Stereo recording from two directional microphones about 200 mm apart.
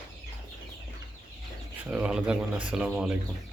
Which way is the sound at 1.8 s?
5° right (ahead or behind).